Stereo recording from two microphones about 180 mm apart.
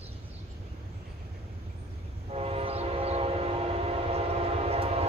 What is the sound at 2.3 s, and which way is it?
Train, 35° right (ahead or behind).